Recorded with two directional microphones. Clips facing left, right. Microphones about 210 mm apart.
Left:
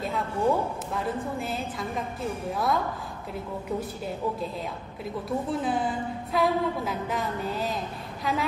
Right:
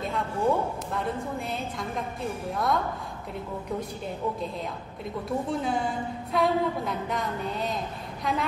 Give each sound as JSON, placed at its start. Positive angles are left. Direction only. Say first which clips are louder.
{"t": 0.0, "sound": "a woman's voice", "louder": "left 1 dB", "side_deg": 0}
{"t": 5.5, "sound": "a woman's voice", "louder": "left 2 dB", "side_deg": 0}